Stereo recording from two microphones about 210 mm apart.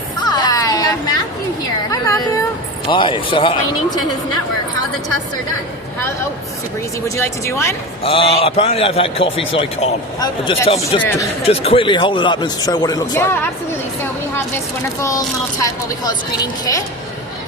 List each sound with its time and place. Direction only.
0.2 s music: 20° left (ahead or behind)
1.9 s a sound: 15° left (ahead or behind)
2.8 s a man's voice: 25° left (ahead or behind)
7.2 s speech: 15° left (ahead or behind)
8.0 s a man's voice: 25° left (ahead or behind)
15.9 s speech: 15° left (ahead or behind)